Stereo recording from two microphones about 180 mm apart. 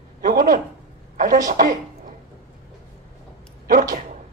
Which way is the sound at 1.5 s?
45° right (ahead or behind).